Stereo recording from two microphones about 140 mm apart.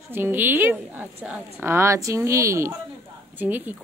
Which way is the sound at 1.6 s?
20° right (ahead or behind).